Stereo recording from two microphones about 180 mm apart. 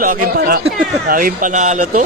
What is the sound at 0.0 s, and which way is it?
Speech, 50° right (ahead or behind).